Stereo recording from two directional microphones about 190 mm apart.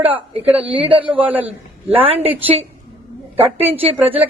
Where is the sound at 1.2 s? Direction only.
10° right (ahead or behind).